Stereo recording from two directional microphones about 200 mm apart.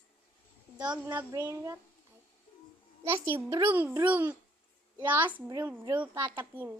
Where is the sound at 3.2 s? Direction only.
10° right (ahead or behind).